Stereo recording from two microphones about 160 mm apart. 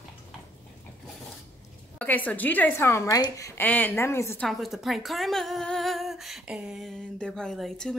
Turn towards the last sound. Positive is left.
turn(degrees=5)  # may be behind; listen again after turning